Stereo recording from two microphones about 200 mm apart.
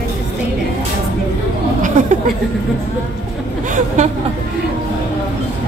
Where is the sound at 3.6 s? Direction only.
40° right (ahead or behind).